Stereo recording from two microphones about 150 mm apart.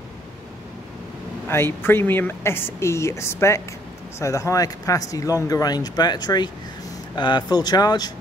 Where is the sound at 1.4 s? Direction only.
15° left (ahead or behind).